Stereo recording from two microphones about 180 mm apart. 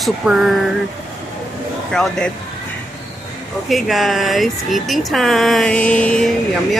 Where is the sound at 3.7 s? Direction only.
Centre (ahead or behind).